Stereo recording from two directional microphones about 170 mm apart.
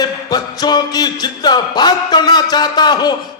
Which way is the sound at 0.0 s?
25° left (ahead or behind).